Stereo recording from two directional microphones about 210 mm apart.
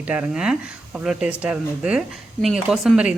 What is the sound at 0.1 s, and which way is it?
Speech, 5° right (ahead or behind).